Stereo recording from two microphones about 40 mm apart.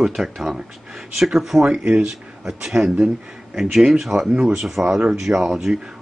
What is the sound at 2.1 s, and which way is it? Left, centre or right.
Speech, centre.